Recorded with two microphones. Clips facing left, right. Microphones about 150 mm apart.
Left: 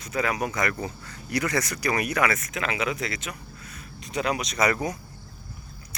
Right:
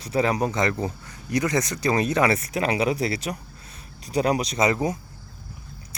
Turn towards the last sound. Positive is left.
turn(degrees=-25)  # may be behind; listen again after turning